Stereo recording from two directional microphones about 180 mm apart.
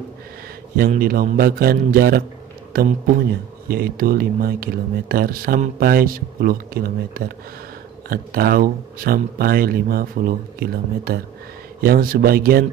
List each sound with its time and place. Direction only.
0.7 s speech: 55° right (ahead or behind)